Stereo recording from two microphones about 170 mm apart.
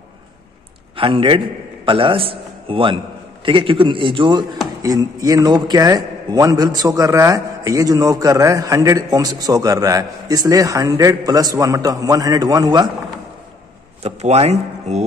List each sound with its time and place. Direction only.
0.9 s a man's voice: 30° right (ahead or behind)
14.0 s speech: 35° right (ahead or behind)